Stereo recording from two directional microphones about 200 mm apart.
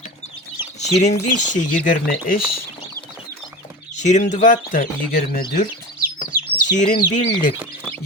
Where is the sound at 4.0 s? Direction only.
35° left (ahead or behind).